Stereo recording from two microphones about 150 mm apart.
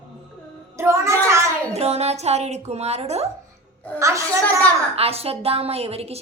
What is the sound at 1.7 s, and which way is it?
A woman's voice, 45° right (ahead or behind).